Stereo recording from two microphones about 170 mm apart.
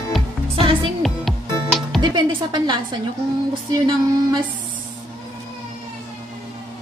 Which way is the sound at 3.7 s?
25° right (ahead or behind).